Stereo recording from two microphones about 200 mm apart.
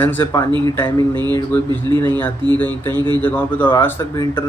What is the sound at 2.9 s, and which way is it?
Speech, 20° right (ahead or behind).